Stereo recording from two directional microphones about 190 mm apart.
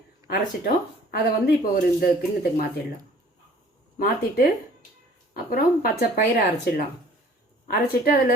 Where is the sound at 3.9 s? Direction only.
50° left (ahead or behind).